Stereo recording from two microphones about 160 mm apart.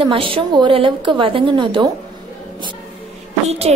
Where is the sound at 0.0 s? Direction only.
35° right (ahead or behind).